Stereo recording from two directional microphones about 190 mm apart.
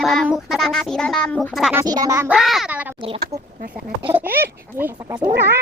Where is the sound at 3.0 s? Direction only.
30° right (ahead or behind).